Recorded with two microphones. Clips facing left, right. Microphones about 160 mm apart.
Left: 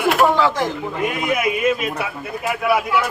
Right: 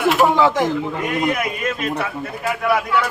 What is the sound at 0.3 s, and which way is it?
Speech, 20° right (ahead or behind).